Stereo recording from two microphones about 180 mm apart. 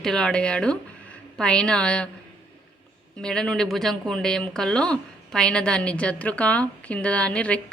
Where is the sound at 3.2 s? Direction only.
5° left (ahead or behind).